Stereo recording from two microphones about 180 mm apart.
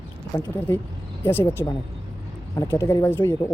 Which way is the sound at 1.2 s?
10° left (ahead or behind).